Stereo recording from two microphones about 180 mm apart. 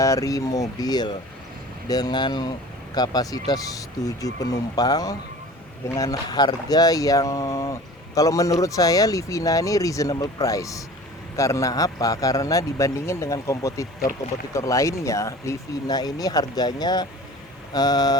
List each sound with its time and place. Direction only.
0.0 s speech: 20° left (ahead or behind)